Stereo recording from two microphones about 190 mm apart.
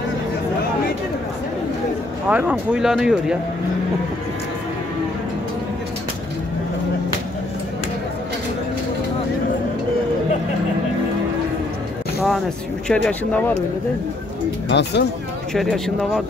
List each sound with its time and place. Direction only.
2.2 s speech: 10° right (ahead or behind)
12.8 s speech: 5° left (ahead or behind)
14.7 s speech: 65° left (ahead or behind)
15.5 s speech: centre (ahead or behind)